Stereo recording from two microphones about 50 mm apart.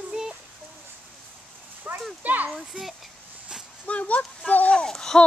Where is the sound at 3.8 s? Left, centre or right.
Left.